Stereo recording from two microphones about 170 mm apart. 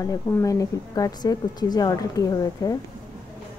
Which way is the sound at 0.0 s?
20° left (ahead or behind).